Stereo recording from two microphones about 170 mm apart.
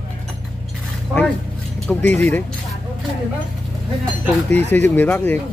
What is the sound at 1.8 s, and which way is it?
Speech, 10° left (ahead or behind).